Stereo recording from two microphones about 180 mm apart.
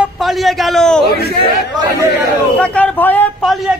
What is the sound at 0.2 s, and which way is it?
Speech, centre (ahead or behind).